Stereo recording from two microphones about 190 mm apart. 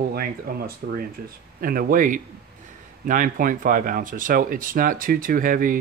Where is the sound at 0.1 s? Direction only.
50° right (ahead or behind).